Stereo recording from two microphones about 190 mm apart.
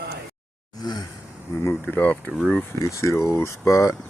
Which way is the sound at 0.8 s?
20° left (ahead or behind).